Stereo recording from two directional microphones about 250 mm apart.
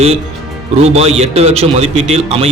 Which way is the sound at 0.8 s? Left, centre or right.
Right.